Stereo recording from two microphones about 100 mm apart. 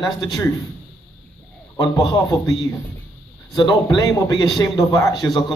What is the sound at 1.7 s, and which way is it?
Speech, 35° left (ahead or behind).